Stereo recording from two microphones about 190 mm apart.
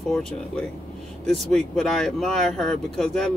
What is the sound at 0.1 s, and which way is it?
Speech, 5° left (ahead or behind).